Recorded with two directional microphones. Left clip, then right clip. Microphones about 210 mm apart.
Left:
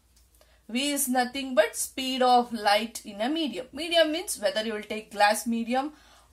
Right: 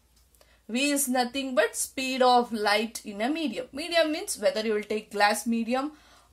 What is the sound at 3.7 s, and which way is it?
A woman's voice, 30° right (ahead or behind).